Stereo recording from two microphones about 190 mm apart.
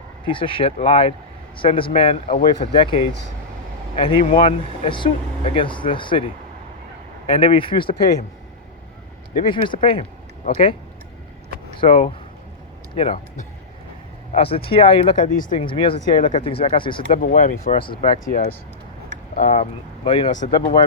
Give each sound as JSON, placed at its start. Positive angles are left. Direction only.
{"t": 0.3, "sound": "speech", "side_deg": 25}
{"t": 9.5, "sound": "speech", "side_deg": 25}
{"t": 10.5, "sound": "speech", "side_deg": 40}
{"t": 11.8, "sound": "speech", "side_deg": 35}
{"t": 15.2, "sound": "speech", "side_deg": 45}
{"t": 15.6, "sound": "speech", "side_deg": 25}
{"t": 16.0, "sound": "speech", "side_deg": 40}
{"t": 16.6, "sound": "speech", "side_deg": 25}
{"t": 17.2, "sound": "speech", "side_deg": 45}
{"t": 20.1, "sound": "speech", "side_deg": 30}
{"t": 20.3, "sound": "speech", "side_deg": 40}